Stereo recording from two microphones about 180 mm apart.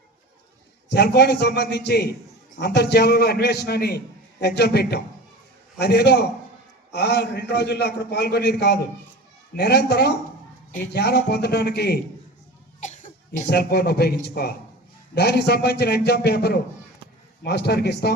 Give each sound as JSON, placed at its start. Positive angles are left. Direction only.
{"t": 0.9, "sound": "a man's voice", "side_deg": 65}
{"t": 12.8, "sound": "cough", "side_deg": 45}
{"t": 13.3, "sound": "a man's voice", "side_deg": 60}